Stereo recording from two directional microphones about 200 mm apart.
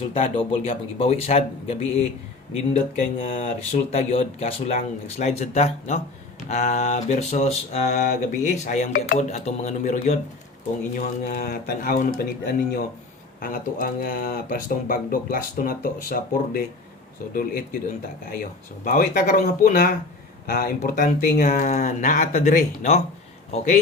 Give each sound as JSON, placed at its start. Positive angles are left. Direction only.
{"t": 0.1, "sound": "speech", "side_deg": 30}
{"t": 18.9, "sound": "speech", "side_deg": 45}